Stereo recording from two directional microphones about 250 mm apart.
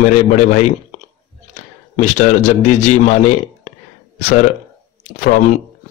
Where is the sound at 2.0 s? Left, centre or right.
Left.